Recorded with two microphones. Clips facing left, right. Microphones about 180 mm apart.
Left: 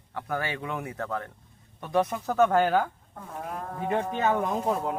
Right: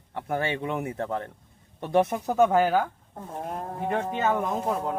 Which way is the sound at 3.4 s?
40° right (ahead or behind).